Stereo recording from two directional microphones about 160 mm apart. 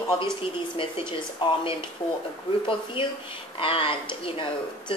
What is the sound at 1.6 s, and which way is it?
A woman's voice, 35° left (ahead or behind).